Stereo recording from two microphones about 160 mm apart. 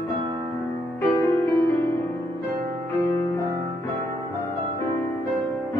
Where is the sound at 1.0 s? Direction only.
15° left (ahead or behind).